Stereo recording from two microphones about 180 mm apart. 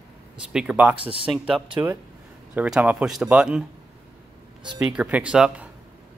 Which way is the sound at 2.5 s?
5° right (ahead or behind).